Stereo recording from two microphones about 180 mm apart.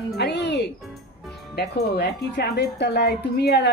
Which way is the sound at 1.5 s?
60° left (ahead or behind).